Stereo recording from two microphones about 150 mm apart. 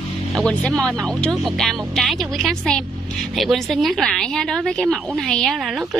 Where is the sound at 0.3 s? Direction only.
5° left (ahead or behind).